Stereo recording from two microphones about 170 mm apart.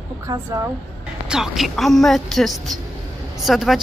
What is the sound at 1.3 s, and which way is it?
Speech, centre (ahead or behind).